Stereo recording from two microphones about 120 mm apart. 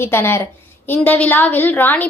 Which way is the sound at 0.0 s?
20° left (ahead or behind).